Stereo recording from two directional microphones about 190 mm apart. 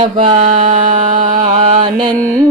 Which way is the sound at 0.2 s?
25° right (ahead or behind).